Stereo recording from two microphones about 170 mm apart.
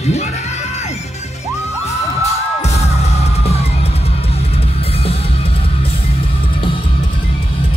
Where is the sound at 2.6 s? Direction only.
40° left (ahead or behind).